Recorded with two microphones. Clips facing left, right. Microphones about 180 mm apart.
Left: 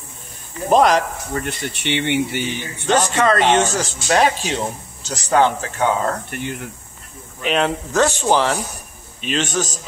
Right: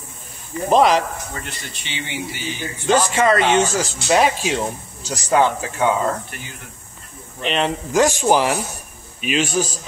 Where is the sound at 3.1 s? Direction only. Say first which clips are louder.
Left 2 dB; 10° right (ahead or behind).